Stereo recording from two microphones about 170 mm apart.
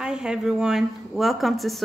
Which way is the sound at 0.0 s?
5° right (ahead or behind).